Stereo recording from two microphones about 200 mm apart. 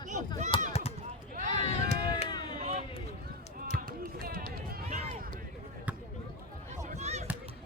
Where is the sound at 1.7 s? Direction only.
35° left (ahead or behind).